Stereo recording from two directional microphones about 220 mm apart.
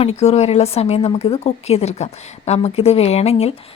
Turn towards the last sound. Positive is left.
turn(degrees=25)  # may be behind; listen again after turning